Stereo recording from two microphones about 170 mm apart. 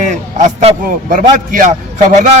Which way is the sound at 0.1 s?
45° right (ahead or behind).